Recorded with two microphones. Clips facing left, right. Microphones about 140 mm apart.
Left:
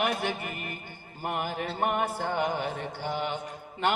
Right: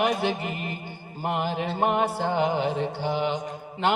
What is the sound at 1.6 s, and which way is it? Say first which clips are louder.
A man's voice: right 4 dB; 20° right (ahead or behind).